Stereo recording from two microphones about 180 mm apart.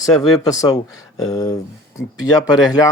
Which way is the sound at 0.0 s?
20° left (ahead or behind).